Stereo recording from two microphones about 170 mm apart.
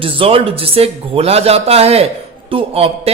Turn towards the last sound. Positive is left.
turn(degrees=-35)  # may be behind; listen again after turning